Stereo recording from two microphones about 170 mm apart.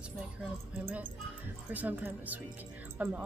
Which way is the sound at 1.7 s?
10° right (ahead or behind).